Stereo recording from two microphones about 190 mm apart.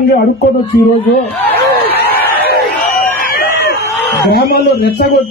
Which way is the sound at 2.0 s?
55° left (ahead or behind).